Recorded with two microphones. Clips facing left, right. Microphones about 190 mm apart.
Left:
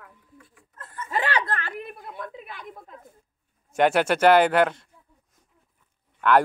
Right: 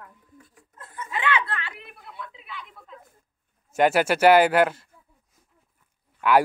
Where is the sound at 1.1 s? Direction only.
40° left (ahead or behind).